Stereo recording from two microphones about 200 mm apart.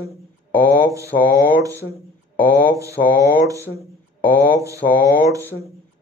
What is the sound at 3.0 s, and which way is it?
Speech, 45° left (ahead or behind).